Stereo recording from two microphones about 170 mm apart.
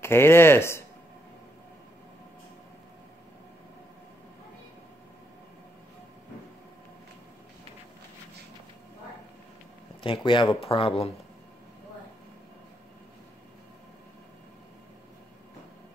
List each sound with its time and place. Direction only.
0.0 s speech: 15° left (ahead or behind)
10.0 s speech: 30° left (ahead or behind)